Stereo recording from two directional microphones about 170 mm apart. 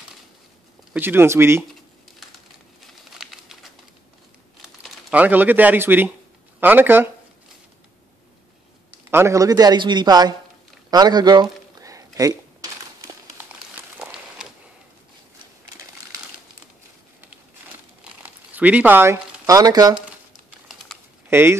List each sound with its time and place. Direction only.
0.9 s speech: 15° right (ahead or behind)
2.8 s crumpling: centre (ahead or behind)
4.6 s speech: 5° right (ahead or behind)
9.1 s a man's voice: 15° right (ahead or behind)
10.9 s a sound: 25° right (ahead or behind)
13.5 s crumpling: 10° right (ahead or behind)
18.2 s speech: 10° right (ahead or behind)
20.9 s a sound: centre (ahead or behind)
21.3 s speech: 15° right (ahead or behind)